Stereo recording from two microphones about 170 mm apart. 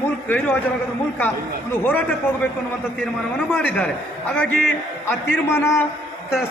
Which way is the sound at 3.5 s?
10° left (ahead or behind).